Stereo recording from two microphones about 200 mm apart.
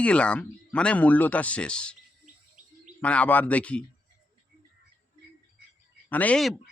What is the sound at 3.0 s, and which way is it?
Speech, 5° left (ahead or behind).